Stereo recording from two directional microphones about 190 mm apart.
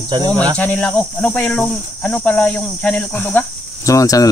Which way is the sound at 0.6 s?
10° left (ahead or behind).